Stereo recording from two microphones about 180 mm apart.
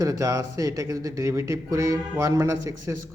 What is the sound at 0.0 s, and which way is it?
Speech, 20° right (ahead or behind).